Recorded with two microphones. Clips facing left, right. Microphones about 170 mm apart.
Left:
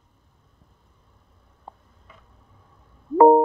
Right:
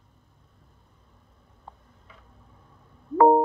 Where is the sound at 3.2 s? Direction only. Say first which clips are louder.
Left 4 dB; 25° left (ahead or behind).